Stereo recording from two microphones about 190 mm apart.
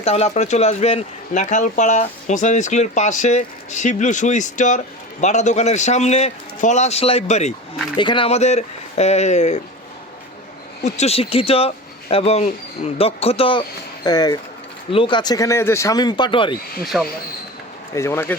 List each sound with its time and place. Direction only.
0.0 s speech: 35° left (ahead or behind)
7.9 s speech: 25° left (ahead or behind)
10.8 s speech: 35° left (ahead or behind)
16.8 s speech: centre (ahead or behind)
17.9 s speech: 15° left (ahead or behind)